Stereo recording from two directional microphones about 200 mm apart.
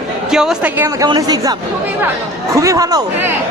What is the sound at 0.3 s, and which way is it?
Speech, 5° right (ahead or behind).